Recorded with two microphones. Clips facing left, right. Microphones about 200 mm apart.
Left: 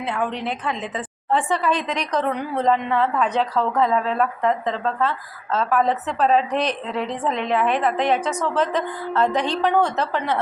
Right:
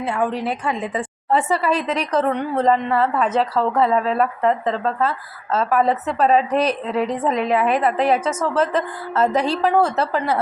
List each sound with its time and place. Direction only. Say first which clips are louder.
0.0 s a woman's voice: right 3 dB; 10° right (ahead or behind)
6.9 s a woman's voice: right 5 dB; 35° right (ahead or behind)
7.2 s a woman's voice: even; 10° right (ahead or behind)